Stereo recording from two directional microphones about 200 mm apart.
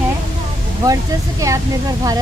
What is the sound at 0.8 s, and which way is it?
Speech, 15° right (ahead or behind).